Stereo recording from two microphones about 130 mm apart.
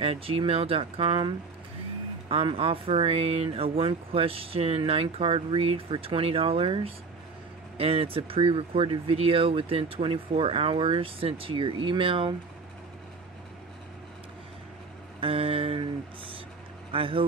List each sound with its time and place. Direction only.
0.0 s speech: 45° right (ahead or behind)
15.1 s speech: 45° right (ahead or behind)
16.9 s speech: 45° right (ahead or behind)